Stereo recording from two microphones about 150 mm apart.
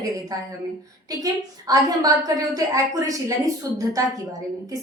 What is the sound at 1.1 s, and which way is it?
A woman's voice, 25° right (ahead or behind).